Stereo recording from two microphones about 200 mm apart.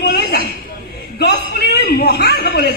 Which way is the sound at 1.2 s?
55° left (ahead or behind).